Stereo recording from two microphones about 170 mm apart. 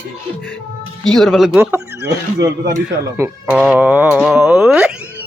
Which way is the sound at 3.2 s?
10° right (ahead or behind).